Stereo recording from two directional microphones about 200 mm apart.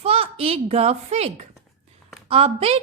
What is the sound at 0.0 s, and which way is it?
A child's voice, 30° right (ahead or behind).